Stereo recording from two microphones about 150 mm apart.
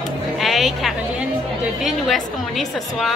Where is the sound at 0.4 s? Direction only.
Centre (ahead or behind).